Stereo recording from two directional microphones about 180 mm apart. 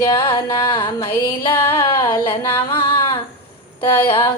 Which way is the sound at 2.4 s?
15° left (ahead or behind).